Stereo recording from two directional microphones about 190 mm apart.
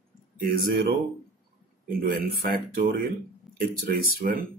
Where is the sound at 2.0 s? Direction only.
50° right (ahead or behind).